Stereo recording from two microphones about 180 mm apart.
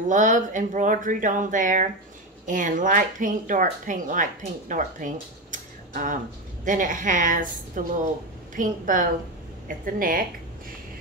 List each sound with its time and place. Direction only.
0.1 s speech: 45° right (ahead or behind)